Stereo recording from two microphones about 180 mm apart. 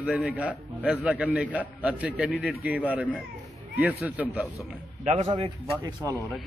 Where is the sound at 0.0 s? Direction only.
5° right (ahead or behind).